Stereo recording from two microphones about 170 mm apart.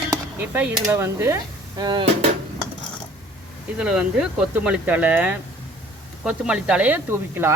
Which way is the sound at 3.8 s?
5° right (ahead or behind).